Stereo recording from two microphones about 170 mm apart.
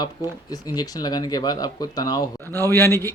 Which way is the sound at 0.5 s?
20° left (ahead or behind).